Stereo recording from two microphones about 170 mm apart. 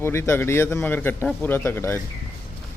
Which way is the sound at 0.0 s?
15° left (ahead or behind).